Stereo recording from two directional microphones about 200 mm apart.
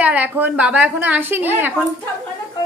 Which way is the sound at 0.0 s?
5° right (ahead or behind).